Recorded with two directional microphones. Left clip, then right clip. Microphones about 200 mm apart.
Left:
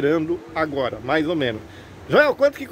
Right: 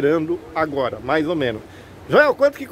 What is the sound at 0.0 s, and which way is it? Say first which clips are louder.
A man's voice: right 2 dB; centre (ahead or behind).